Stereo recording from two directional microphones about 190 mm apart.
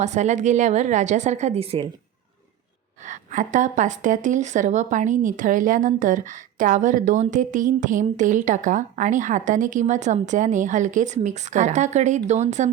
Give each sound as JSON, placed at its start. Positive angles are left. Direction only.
{"t": 0.0, "sound": "a woman's voice", "side_deg": -40}
{"t": 3.0, "sound": "a woman's voice", "side_deg": -40}